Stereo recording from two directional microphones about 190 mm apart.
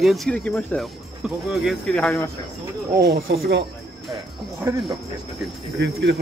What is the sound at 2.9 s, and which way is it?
Speech, 55° right (ahead or behind).